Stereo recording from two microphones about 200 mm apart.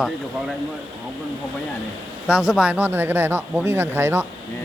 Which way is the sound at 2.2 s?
5° right (ahead or behind).